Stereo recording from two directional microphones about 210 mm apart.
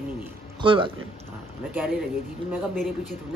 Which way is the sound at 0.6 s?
25° right (ahead or behind).